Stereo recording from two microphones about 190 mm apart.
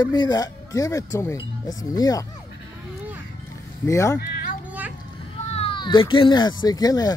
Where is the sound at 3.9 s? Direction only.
15° left (ahead or behind).